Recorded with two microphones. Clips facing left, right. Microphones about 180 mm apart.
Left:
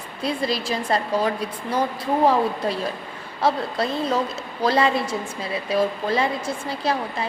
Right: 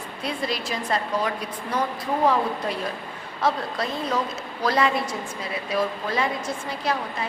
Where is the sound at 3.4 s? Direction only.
30° left (ahead or behind).